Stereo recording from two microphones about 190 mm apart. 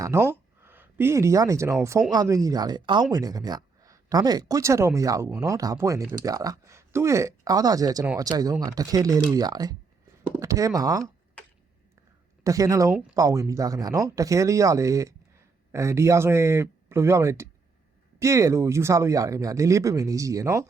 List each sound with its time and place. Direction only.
0.0 s a sound: 15° right (ahead or behind)
2.1 s speech: 15° right (ahead or behind)
12.4 s speech: 15° right (ahead or behind)
12.9 s speech: 5° right (ahead or behind)
13.1 s speech: 15° right (ahead or behind)